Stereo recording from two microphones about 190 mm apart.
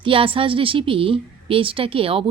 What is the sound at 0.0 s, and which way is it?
A woman's voice, 25° right (ahead or behind).